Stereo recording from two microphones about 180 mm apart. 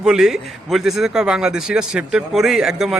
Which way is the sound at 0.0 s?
5° right (ahead or behind).